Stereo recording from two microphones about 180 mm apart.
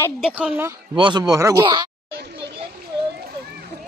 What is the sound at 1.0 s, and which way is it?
Speech, 25° right (ahead or behind).